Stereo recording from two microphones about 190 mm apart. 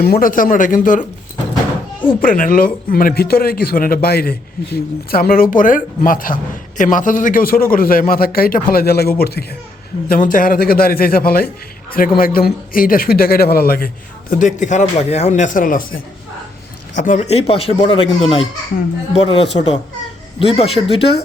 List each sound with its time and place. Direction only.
0.0 s a man's voice: 50° left (ahead or behind)
2.2 s a man's voice: 45° left (ahead or behind)
10.1 s a man's voice: 45° left (ahead or behind)
17.0 s speech: 40° left (ahead or behind)